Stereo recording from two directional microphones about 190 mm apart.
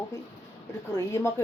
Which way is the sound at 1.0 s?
15° left (ahead or behind).